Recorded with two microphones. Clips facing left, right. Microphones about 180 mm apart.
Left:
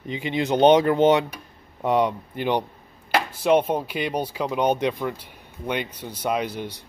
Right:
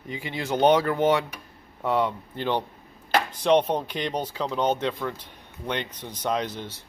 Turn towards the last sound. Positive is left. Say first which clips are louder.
# left 3 dB
turn(degrees=15)  # may be behind; listen again after turning